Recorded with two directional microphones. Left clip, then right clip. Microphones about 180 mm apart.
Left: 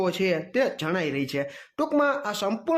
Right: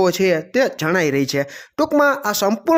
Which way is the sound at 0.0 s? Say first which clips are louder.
Right 9 dB; 35° right (ahead or behind).